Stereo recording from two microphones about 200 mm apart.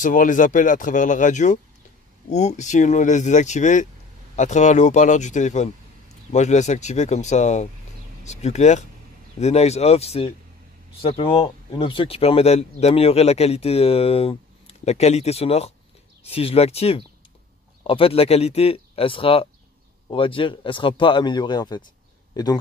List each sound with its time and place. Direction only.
0.0 s speech: 40° left (ahead or behind); by 22.6 s 20° left (ahead or behind)